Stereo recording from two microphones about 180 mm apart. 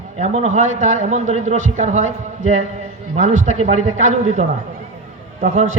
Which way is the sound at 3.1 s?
40° right (ahead or behind).